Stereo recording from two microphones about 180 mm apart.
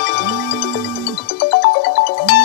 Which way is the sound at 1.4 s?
70° left (ahead or behind).